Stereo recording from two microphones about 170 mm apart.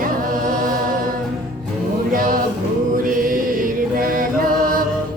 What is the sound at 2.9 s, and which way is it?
Mantra, 55° right (ahead or behind).